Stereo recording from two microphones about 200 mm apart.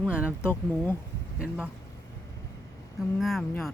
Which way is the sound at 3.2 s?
Centre (ahead or behind).